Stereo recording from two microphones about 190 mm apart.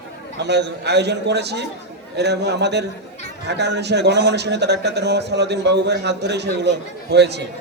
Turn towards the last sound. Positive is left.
turn(degrees=-65)  # may be behind; listen again after turning